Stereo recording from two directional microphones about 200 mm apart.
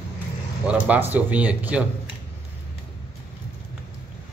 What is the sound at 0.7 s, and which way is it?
Speech, 10° right (ahead or behind).